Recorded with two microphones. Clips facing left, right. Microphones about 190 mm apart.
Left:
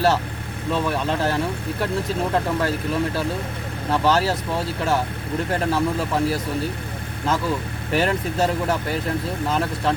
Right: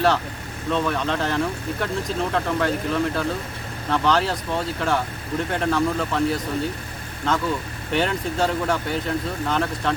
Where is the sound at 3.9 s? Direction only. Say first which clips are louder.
Left 1 dB; 5° left (ahead or behind).